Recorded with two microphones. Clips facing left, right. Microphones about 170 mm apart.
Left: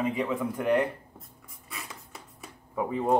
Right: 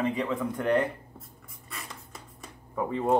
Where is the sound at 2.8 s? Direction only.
5° left (ahead or behind).